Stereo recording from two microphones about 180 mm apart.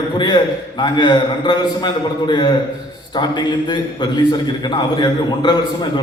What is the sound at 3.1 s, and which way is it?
A man's voice, 25° left (ahead or behind).